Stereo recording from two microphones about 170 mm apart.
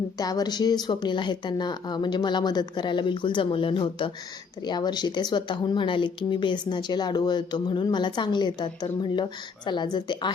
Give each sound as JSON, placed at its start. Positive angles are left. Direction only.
{"t": 0.2, "sound": "speech", "side_deg": 20}